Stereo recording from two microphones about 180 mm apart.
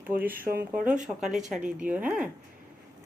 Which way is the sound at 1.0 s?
Centre (ahead or behind).